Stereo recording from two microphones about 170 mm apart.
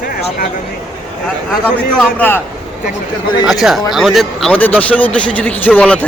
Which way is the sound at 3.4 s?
5° right (ahead or behind).